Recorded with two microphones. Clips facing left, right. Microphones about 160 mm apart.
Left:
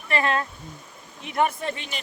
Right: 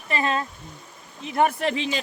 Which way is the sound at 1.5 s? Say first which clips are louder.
Right 5 dB; 80° right.